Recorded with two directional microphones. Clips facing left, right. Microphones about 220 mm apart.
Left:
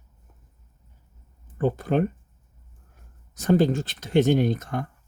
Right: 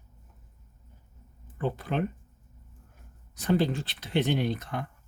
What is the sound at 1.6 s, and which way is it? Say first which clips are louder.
Speech: left 7 dB; 45° left (ahead or behind).